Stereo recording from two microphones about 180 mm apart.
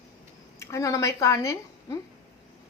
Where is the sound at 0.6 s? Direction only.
15° left (ahead or behind).